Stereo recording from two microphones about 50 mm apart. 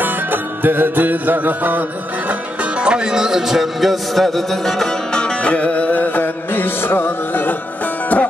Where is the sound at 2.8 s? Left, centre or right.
Centre.